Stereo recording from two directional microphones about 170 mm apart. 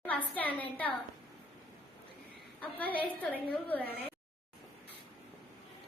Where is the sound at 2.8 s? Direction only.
30° left (ahead or behind).